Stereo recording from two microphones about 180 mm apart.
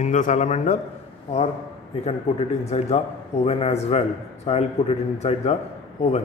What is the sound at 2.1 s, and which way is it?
A man's voice, 35° left (ahead or behind).